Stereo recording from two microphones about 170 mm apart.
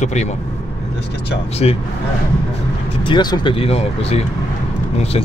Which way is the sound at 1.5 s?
35° left (ahead or behind).